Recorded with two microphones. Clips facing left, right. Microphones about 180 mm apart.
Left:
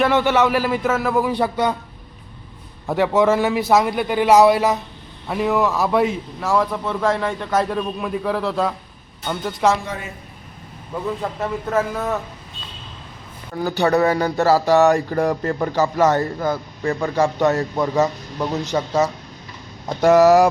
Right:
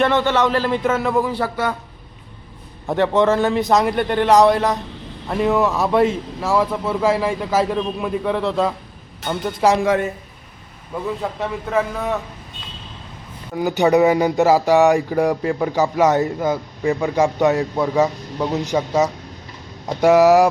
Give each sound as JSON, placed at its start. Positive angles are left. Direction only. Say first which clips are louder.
{"t": 0.0, "sound": "a man's voice", "louder": "even", "side_deg": 10}
{"t": 1.3, "sound": "a man's voice", "louder": "left 2 dB", "side_deg": 15}
{"t": 2.9, "sound": "a man's voice", "louder": "even", "side_deg": 5}
{"t": 11.2, "sound": "a man's voice", "louder": "even", "side_deg": 0}
{"t": 13.6, "sound": "speech", "louder": "right 3 dB", "side_deg": -15}